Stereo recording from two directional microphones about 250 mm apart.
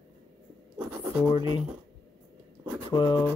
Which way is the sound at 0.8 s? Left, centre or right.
Centre.